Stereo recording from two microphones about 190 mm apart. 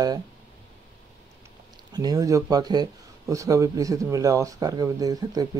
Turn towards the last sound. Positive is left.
turn(degrees=-20)  # may be behind; listen again after turning